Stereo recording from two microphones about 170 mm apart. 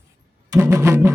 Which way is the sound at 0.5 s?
15° right (ahead or behind).